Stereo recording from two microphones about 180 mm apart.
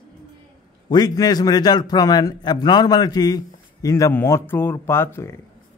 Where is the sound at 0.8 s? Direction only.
20° left (ahead or behind).